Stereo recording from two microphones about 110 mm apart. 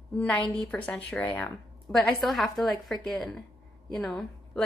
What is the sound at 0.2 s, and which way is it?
A woman's voice, 10° left (ahead or behind).